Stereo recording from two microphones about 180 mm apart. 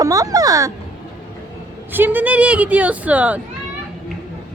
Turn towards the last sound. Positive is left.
turn(degrees=-10)  # may be behind; listen again after turning